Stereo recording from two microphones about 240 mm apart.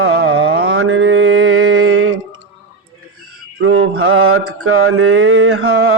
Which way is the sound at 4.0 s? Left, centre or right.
Right.